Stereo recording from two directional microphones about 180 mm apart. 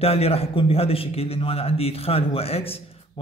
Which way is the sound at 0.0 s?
35° left (ahead or behind).